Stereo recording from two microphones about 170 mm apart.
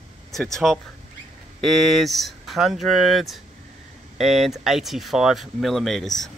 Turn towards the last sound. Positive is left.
turn(degrees=0)  # may be behind; listen again after turning